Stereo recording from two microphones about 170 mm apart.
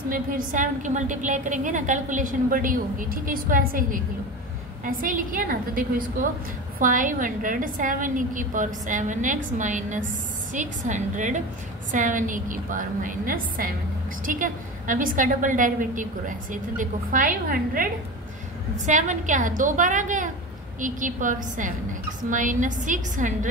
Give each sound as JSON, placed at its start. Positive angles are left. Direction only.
{"t": 0.1, "sound": "a woman's voice", "side_deg": -55}
{"t": 18.9, "sound": "a woman's voice", "side_deg": -45}